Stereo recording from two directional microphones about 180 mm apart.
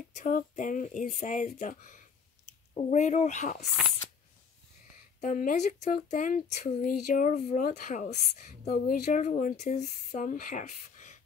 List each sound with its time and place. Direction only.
0.1 s speech: 45° left (ahead or behind)
5.2 s speech: 45° left (ahead or behind)